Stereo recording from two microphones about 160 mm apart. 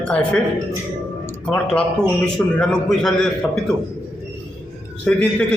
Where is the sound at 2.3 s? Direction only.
5° left (ahead or behind).